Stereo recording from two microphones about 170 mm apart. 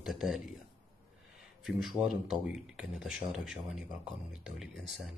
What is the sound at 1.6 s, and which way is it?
Speech, centre (ahead or behind).